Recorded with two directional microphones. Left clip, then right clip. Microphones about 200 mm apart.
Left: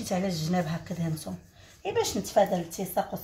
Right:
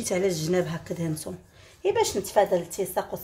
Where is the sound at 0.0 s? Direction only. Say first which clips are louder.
Right 5 dB; 45° right (ahead or behind).